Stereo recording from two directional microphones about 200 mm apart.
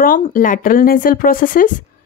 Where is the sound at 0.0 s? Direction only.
45° left (ahead or behind).